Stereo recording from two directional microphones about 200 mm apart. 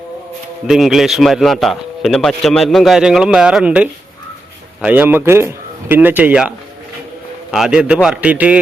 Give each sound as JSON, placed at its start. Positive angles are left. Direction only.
{"t": 0.7, "sound": "a man's voice", "side_deg": 0}
{"t": 7.5, "sound": "a man's voice", "side_deg": -5}